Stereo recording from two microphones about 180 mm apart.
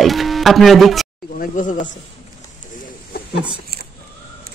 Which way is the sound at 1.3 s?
45° left (ahead or behind).